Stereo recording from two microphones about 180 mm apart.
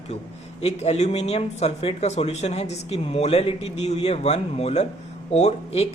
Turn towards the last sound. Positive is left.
turn(degrees=35)  # may be behind; listen again after turning